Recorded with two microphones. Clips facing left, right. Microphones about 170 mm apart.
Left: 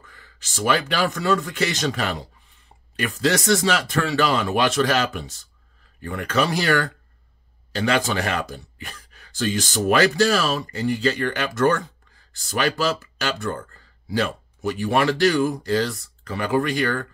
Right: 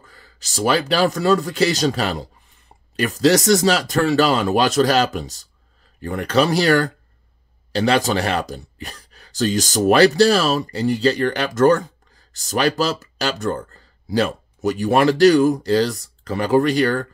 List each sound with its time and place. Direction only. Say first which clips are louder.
0.0 s speech: right 2 dB; 35° right (ahead or behind)